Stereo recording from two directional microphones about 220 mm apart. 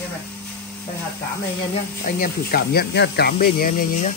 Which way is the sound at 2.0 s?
40° left (ahead or behind).